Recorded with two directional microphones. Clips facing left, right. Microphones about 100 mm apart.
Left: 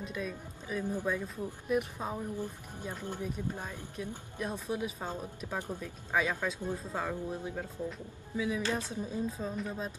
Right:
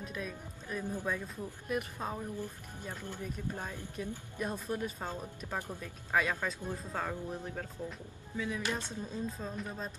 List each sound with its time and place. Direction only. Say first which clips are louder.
0.0 s speech: left 3 dB; centre (ahead or behind)
0.8 s a woman's voice: left 3 dB; 10° left (ahead or behind)
2.3 s speech: left 3 dB; 15° left (ahead or behind)
4.0 s a woman's voice: even; centre (ahead or behind)
5.6 s speech: left 5 dB; 15° left (ahead or behind)
6.1 s a woman's voice: left 1 dB; centre (ahead or behind)
6.6 s a woman's voice: left 2 dB; 10° left (ahead or behind)